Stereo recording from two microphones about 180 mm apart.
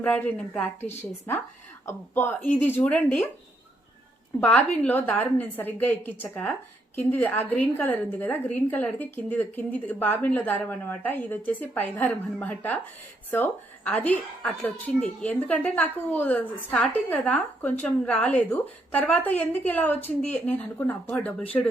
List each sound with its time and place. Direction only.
0.0 s a woman's voice: 10° left (ahead or behind)
1.9 s a woman's voice: 10° left (ahead or behind)
4.4 s a woman's voice: 5° left (ahead or behind)